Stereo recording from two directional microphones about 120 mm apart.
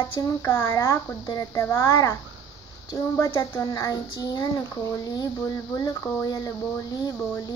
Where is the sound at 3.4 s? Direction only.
30° left (ahead or behind).